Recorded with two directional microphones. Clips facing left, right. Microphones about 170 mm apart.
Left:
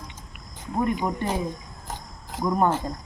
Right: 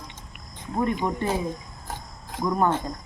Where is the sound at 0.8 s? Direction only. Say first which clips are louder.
Even; 10° left (ahead or behind).